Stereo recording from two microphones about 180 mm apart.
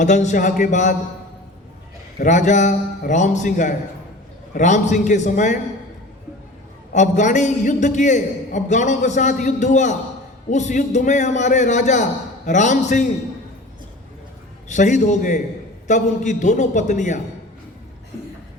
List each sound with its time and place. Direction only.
0.0 s a man's voice: 40° left (ahead or behind)
2.1 s a man's voice: 40° left (ahead or behind)
6.9 s a man's voice: 40° left (ahead or behind)
14.7 s a man's voice: 40° left (ahead or behind)